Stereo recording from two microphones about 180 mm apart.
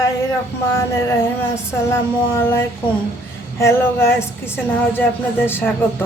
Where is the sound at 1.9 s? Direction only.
15° left (ahead or behind).